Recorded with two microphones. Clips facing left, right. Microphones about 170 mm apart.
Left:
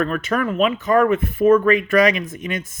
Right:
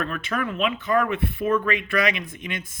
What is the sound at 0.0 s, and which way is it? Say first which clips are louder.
Speech: left 6 dB; 45° left (ahead or behind).